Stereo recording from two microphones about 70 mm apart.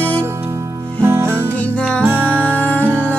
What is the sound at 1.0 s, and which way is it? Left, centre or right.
Music, right.